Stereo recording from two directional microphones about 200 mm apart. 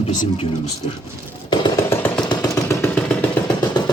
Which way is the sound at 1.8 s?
10° left (ahead or behind).